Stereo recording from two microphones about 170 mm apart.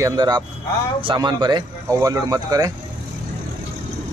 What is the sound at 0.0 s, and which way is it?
Speech, 20° right (ahead or behind).